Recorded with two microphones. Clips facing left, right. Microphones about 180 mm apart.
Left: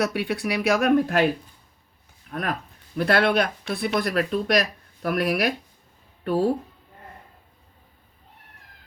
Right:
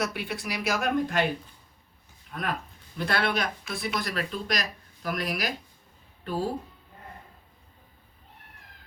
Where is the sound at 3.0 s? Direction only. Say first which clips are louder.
Left 7 dB; 55° left (ahead or behind).